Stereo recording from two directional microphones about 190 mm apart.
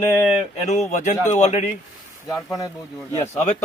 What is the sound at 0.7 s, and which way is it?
A man's voice, 35° left (ahead or behind).